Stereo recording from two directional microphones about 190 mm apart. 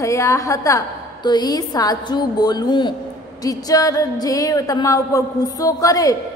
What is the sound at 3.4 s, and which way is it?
Music, 20° left (ahead or behind).